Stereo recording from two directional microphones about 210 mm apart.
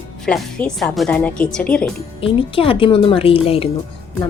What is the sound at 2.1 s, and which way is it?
Speech, 25° left (ahead or behind).